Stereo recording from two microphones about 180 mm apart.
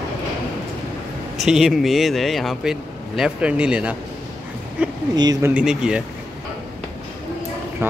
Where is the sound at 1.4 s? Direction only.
Centre (ahead or behind).